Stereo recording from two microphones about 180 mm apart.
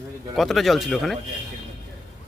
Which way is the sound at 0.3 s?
Centre (ahead or behind).